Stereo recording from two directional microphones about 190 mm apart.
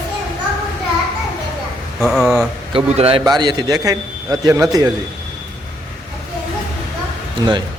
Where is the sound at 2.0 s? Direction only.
Centre (ahead or behind).